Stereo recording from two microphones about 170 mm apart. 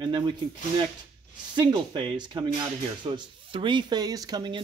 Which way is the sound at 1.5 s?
25° right (ahead or behind).